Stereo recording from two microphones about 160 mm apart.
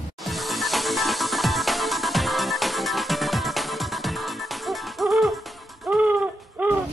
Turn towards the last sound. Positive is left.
turn(degrees=-10)  # may be behind; listen again after turning